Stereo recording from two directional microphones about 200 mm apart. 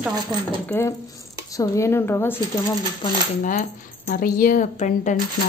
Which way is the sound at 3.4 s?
45° left (ahead or behind).